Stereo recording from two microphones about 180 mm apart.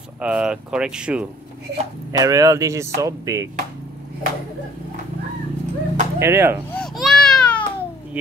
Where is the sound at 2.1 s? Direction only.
20° right (ahead or behind).